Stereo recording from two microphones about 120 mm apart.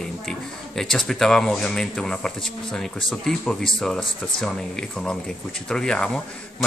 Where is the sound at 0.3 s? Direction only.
5° left (ahead or behind).